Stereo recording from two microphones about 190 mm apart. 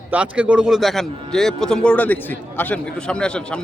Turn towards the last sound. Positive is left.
turn(degrees=5)  # may be behind; listen again after turning